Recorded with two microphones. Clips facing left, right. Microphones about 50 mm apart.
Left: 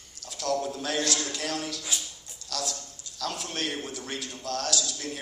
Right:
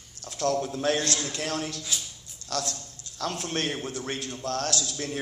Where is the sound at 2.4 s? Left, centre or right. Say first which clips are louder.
Right 3 dB; right.